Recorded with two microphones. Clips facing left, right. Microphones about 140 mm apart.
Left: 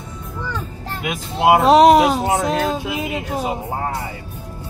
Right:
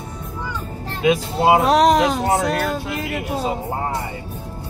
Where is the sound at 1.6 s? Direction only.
5° left (ahead or behind).